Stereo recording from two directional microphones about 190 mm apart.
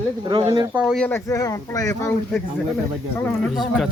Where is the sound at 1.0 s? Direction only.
15° left (ahead or behind).